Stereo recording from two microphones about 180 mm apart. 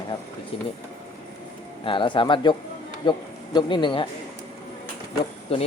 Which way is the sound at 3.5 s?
25° left (ahead or behind).